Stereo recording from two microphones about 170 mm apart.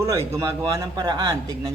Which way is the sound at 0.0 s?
15° right (ahead or behind).